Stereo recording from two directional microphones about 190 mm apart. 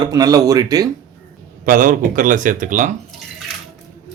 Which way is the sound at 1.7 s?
45° right (ahead or behind).